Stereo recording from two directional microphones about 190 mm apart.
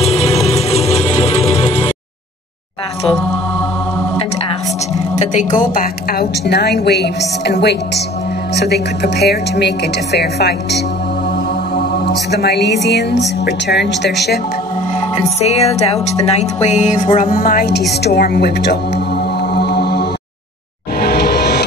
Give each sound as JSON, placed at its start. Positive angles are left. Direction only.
{"t": 0.0, "sound": "music", "side_deg": 35}
{"t": 5.1, "sound": "a woman's voice", "side_deg": 40}
{"t": 15.1, "sound": "music", "side_deg": 35}
{"t": 21.0, "sound": "train", "side_deg": 55}